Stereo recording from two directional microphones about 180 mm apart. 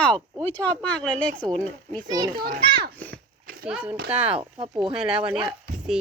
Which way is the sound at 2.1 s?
25° right (ahead or behind).